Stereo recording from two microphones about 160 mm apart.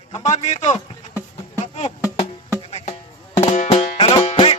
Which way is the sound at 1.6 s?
40° left (ahead or behind).